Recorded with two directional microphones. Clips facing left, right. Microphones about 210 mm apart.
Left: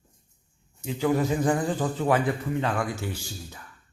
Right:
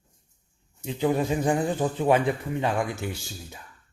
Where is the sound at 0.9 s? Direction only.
20° right (ahead or behind).